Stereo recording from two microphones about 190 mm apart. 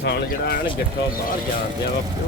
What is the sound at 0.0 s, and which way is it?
Speech, 60° left (ahead or behind).